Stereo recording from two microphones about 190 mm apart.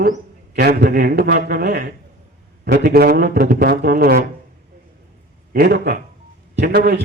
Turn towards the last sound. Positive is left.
turn(degrees=-60)  # may be behind; listen again after turning